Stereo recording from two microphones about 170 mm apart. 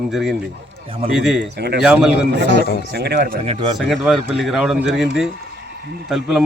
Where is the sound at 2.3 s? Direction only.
85° right.